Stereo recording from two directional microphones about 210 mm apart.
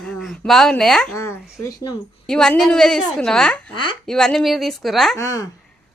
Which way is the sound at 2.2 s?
5° left (ahead or behind).